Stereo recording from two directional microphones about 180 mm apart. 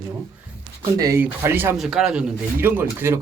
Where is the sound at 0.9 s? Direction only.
20° right (ahead or behind).